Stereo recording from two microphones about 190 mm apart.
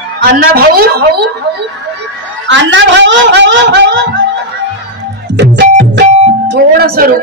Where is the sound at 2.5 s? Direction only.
75° right (ahead or behind).